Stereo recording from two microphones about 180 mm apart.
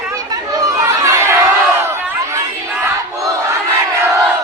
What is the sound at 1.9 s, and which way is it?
Crowd, 15° right (ahead or behind).